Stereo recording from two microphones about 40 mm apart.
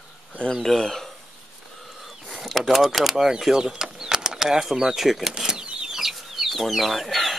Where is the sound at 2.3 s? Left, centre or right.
Centre.